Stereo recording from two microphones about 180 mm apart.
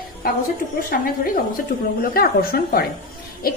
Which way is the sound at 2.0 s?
55° left (ahead or behind).